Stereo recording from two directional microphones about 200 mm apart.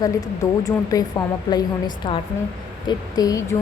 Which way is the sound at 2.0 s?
25° left (ahead or behind).